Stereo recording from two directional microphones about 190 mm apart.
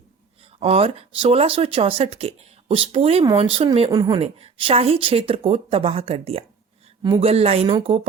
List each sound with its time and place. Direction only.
0.6 s speech: 30° right (ahead or behind)